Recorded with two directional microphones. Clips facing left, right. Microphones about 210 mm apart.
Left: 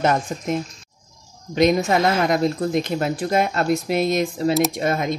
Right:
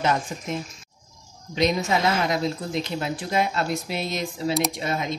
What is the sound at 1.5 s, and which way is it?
A woman's voice, 50° left (ahead or behind).